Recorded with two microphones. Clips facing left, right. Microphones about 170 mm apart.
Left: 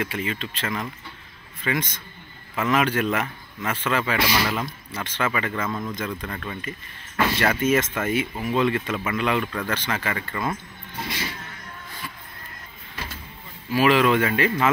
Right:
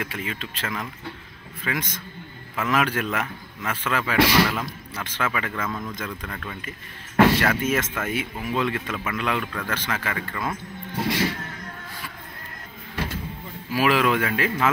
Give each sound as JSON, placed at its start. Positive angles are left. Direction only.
{"t": 0.0, "sound": "speech", "side_deg": -5}
{"t": 11.0, "sound": "vehicle", "side_deg": -75}
{"t": 13.7, "sound": "speech", "side_deg": -5}